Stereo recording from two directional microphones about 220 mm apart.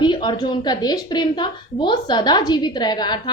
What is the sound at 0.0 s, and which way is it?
A woman's voice, 20° left (ahead or behind).